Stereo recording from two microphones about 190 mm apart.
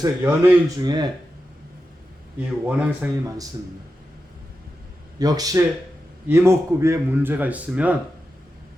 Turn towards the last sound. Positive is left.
turn(degrees=-10)  # may be behind; listen again after turning